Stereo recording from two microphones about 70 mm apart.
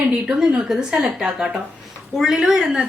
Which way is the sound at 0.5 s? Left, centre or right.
Centre.